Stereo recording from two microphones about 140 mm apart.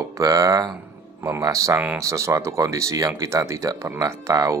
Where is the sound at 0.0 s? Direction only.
25° right (ahead or behind).